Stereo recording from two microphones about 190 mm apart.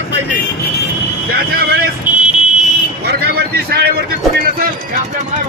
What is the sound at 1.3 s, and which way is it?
Speech, 55° right (ahead or behind).